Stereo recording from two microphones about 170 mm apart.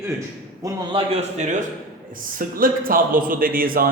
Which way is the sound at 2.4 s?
55° right (ahead or behind).